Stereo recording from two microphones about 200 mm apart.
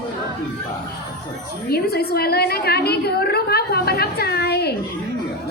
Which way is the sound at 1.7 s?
50° left (ahead or behind).